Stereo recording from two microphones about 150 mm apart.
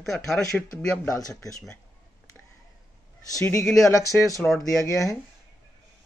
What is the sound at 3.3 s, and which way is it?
Speech, 20° left (ahead or behind).